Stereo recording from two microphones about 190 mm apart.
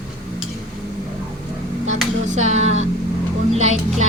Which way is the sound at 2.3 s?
35° right (ahead or behind).